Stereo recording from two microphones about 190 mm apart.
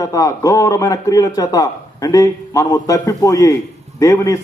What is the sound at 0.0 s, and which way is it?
A man's voice, 15° left (ahead or behind).